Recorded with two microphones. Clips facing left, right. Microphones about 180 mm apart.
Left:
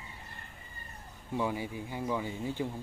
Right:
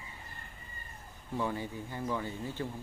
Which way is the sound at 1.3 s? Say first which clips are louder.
Left 2 dB; 10° left (ahead or behind).